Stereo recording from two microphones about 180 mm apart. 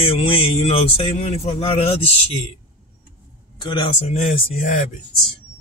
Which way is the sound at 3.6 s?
25° left (ahead or behind).